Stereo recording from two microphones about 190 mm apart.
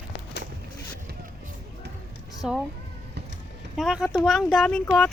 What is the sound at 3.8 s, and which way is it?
Speech, centre (ahead or behind).